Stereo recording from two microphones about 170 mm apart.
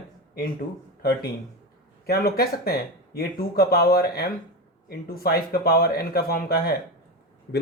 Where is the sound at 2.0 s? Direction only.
65° left (ahead or behind).